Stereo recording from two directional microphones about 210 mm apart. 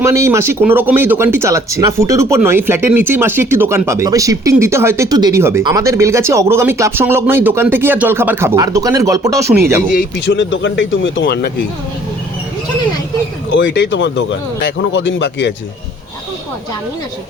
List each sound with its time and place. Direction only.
0.0 s speech: 15° right (ahead or behind)
9.9 s speech: 50° left (ahead or behind)
13.5 s speech: 60° left (ahead or behind)